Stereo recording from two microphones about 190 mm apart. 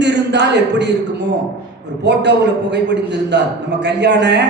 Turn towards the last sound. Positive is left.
turn(degrees=-65)  # may be behind; listen again after turning